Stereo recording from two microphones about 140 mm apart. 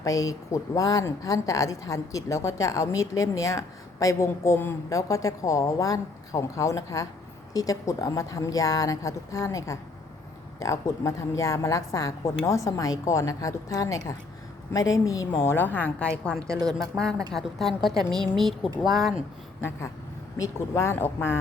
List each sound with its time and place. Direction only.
0.0 s a woman's voice: 25° left (ahead or behind); by 18.7 s centre (ahead or behind)
18.9 s speech: 25° right (ahead or behind)
20.4 s a woman's voice: 20° left (ahead or behind)